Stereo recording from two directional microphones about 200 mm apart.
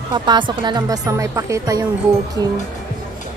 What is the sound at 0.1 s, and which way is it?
Speech, 25° right (ahead or behind).